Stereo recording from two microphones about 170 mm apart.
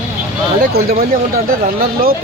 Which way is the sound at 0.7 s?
60° right (ahead or behind).